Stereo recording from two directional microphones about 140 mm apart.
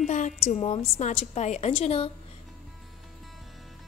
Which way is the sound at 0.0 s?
60° left (ahead or behind).